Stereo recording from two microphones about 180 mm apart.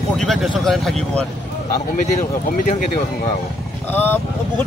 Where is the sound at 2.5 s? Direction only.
50° left (ahead or behind).